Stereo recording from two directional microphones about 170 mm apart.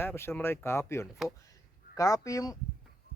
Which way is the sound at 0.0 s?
15° left (ahead or behind).